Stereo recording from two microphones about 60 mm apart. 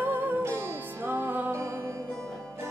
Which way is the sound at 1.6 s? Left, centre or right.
Right.